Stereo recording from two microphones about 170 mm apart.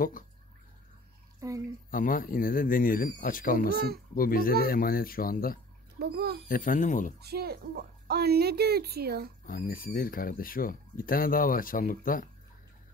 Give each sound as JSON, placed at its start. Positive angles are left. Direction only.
{"t": 1.4, "sound": "speech", "side_deg": -20}
{"t": 1.9, "sound": "speech", "side_deg": 55}
{"t": 3.7, "sound": "a child's voice", "side_deg": -65}
{"t": 4.1, "sound": "speech", "side_deg": 60}
{"t": 5.9, "sound": "a child's voice", "side_deg": -70}
{"t": 6.5, "sound": "speech", "side_deg": 50}
{"t": 7.2, "sound": "a child's voice", "side_deg": -70}
{"t": 9.5, "sound": "speech", "side_deg": 55}